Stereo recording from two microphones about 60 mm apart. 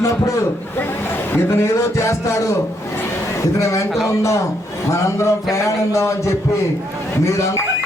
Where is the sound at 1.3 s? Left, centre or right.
Left.